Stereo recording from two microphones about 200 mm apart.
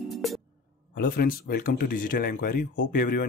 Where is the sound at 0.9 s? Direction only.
45° left (ahead or behind).